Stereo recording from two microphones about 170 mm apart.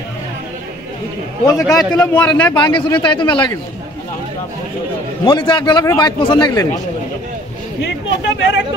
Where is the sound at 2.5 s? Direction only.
25° left (ahead or behind).